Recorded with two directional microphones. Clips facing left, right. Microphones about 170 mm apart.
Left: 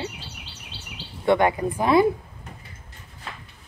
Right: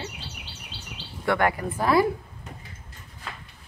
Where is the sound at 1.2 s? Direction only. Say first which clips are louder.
Left 4 dB; 20° left (ahead or behind).